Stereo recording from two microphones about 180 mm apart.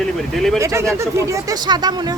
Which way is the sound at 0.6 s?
15° right (ahead or behind).